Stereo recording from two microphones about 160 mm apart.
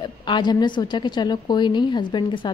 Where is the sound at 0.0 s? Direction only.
30° left (ahead or behind).